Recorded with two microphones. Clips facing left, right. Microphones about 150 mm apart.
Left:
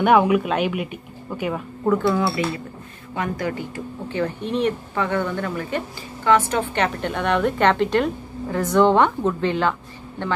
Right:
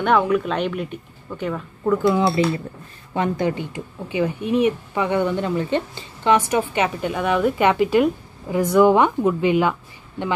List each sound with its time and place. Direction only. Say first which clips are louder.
0.0 s speech: left 2 dB; 10° left (ahead or behind)
2.0 s speech: right 3 dB; 20° right (ahead or behind)